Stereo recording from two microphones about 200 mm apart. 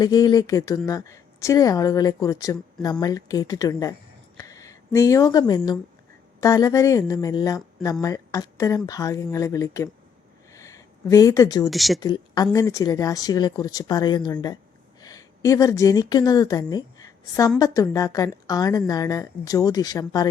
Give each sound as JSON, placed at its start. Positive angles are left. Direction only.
{"t": 0.0, "sound": "a woman's voice", "side_deg": 20}
{"t": 10.5, "sound": "a sound", "side_deg": 15}
{"t": 11.7, "sound": "speech", "side_deg": 0}
{"t": 11.9, "sound": "a woman's voice", "side_deg": 20}